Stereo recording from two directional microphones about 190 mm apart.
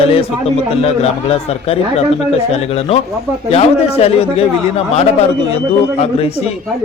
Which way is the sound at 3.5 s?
30° left (ahead or behind).